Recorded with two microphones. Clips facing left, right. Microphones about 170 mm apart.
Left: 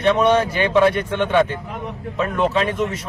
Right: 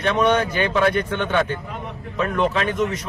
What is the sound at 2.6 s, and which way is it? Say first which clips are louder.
Speech: even; 25° left (ahead or behind).